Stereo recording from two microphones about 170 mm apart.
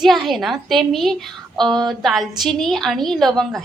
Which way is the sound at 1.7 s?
25° right (ahead or behind).